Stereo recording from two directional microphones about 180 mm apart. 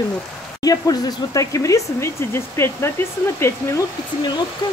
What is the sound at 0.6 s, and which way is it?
Speech, 20° left (ahead or behind).